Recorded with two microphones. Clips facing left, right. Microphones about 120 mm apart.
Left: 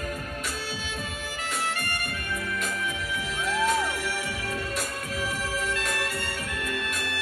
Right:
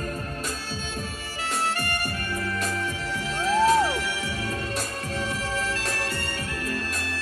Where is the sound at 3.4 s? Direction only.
30° right (ahead or behind).